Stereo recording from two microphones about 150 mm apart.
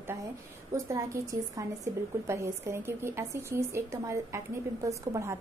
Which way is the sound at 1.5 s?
20° right (ahead or behind).